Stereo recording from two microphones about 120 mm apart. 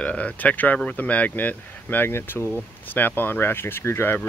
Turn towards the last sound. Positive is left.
turn(degrees=20)  # may be behind; listen again after turning